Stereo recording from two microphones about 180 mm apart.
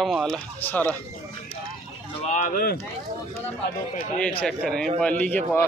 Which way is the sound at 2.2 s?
40° left (ahead or behind).